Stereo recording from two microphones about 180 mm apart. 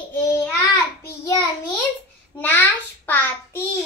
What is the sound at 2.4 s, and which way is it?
A child's voice, 10° left (ahead or behind).